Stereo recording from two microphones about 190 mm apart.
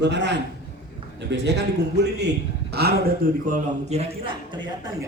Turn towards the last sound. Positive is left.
turn(degrees=-30)  # may be behind; listen again after turning